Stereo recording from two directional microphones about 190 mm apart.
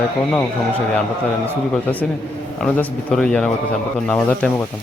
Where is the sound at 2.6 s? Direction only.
10° left (ahead or behind).